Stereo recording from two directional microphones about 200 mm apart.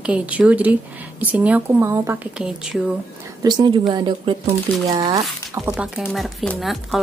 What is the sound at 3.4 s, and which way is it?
Speech, 20° right (ahead or behind).